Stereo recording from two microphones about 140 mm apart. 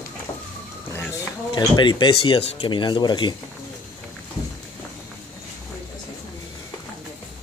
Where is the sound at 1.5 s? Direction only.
35° left (ahead or behind).